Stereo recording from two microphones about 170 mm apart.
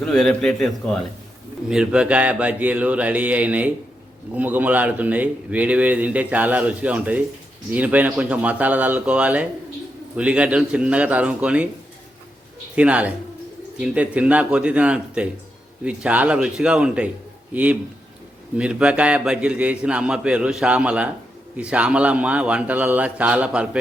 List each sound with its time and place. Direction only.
0.0 s a man's voice: 5° left (ahead or behind)
12.7 s a man's voice: 5° right (ahead or behind)